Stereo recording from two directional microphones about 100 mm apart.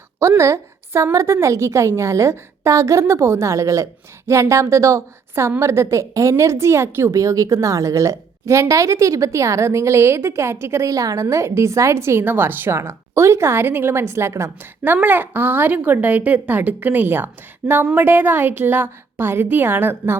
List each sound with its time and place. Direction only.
0.2 s a woman's voice: 30° right (ahead or behind)